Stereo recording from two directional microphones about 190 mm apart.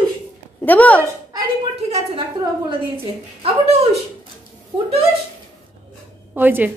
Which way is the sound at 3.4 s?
35° right (ahead or behind).